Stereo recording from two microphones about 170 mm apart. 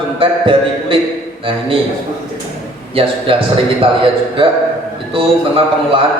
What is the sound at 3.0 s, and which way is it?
Speech, 35° right (ahead or behind).